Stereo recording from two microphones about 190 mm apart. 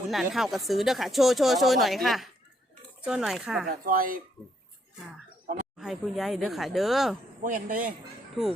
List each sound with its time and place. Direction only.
0.1 s speech: centre (ahead or behind)
3.7 s a man's voice: 50° right (ahead or behind)
5.7 s speech: centre (ahead or behind)
7.4 s a man's voice: 45° right (ahead or behind)